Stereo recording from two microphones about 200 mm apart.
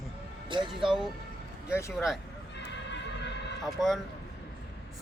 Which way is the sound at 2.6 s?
60° left (ahead or behind).